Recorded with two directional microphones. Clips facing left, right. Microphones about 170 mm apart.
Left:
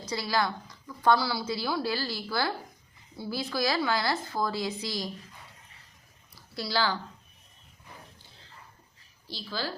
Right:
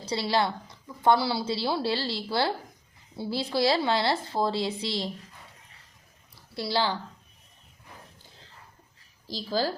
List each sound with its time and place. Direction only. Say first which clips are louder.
0.0 s speech: right 3 dB; 30° right (ahead or behind)
6.3 s a sound: right 3 dB; 25° right (ahead or behind)
9.2 s a woman's voice: right 7 dB; 40° right (ahead or behind)